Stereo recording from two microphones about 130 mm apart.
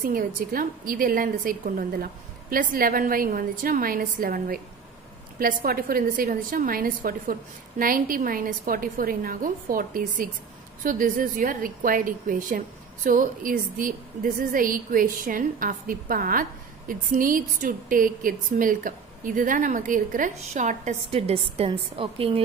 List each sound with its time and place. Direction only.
0.0 s a woman's voice: 90° right
5.4 s a woman's voice: 90° right; by 21.2 s 65° right (ahead or behind)
21.2 s a woman's voice: 50° right (ahead or behind)